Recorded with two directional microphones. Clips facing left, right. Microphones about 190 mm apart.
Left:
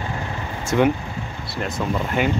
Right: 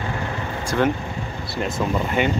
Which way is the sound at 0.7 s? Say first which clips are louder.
Left 3 dB; 15° left (ahead or behind).